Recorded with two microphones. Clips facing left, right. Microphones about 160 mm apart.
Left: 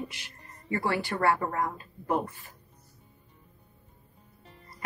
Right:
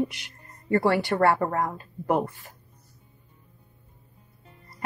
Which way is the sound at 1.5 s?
55° right (ahead or behind).